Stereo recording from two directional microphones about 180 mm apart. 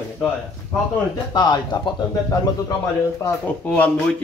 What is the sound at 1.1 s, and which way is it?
Speech, 25° left (ahead or behind).